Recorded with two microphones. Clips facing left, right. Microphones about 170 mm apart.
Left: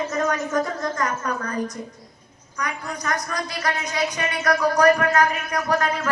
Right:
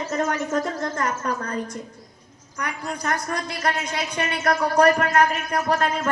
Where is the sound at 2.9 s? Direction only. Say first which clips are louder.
Right 3 dB; 30° right (ahead or behind).